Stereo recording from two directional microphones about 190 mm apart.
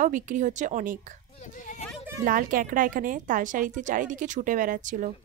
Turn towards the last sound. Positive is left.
turn(degrees=-45)  # may be behind; listen again after turning